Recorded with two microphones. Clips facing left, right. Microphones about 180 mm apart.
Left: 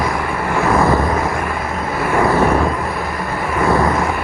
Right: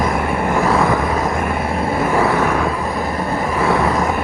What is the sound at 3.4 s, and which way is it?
Vehicle, 5° right (ahead or behind).